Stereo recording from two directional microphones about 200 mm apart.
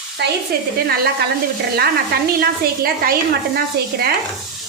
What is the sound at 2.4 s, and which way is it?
Speech, 50° right (ahead or behind).